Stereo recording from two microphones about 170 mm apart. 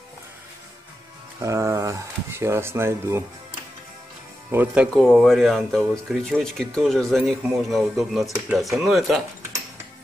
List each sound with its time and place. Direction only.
1.4 s speech: 20° right (ahead or behind)
4.5 s speech: 10° right (ahead or behind)
4.9 s speech: 5° left (ahead or behind)